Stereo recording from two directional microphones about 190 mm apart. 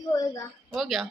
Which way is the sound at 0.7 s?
Centre (ahead or behind).